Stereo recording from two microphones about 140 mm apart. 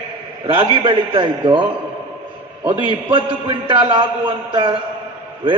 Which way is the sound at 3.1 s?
35° right (ahead or behind).